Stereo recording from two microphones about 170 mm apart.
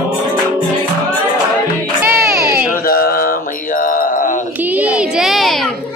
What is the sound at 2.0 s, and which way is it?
Music, 15° right (ahead or behind).